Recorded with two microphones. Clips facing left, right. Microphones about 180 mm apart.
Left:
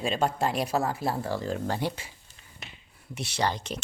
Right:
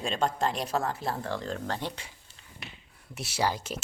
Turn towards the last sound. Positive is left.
turn(degrees=-5)  # may be behind; listen again after turning